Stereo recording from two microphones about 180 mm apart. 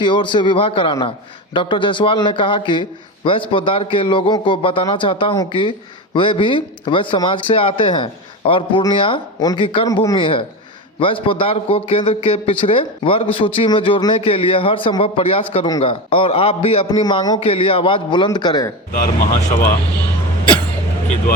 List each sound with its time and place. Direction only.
0.0 s a man's voice: 25° left (ahead or behind)
18.9 s speech: 50° left (ahead or behind)